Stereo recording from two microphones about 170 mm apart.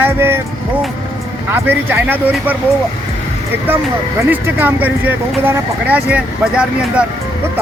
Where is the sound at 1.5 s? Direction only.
10° right (ahead or behind).